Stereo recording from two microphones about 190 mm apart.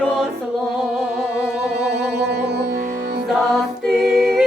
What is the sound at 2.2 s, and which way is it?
Music, 60° right (ahead or behind).